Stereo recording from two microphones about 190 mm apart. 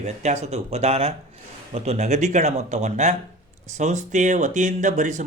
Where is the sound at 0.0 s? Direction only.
35° right (ahead or behind).